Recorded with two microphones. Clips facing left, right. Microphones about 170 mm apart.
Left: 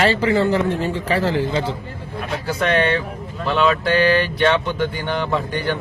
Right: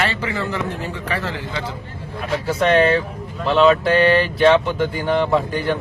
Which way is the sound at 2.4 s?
Centre (ahead or behind).